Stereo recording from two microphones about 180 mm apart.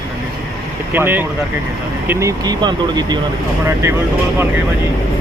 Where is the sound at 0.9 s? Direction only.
10° right (ahead or behind).